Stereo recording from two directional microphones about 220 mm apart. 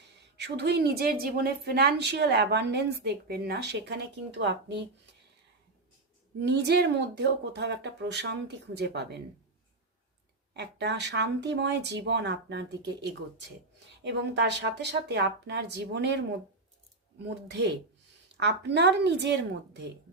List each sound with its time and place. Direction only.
0.3 s speech: 50° right (ahead or behind)
6.4 s speech: 50° right (ahead or behind)
10.5 s speech: 50° right (ahead or behind)
17.2 s speech: 50° right (ahead or behind)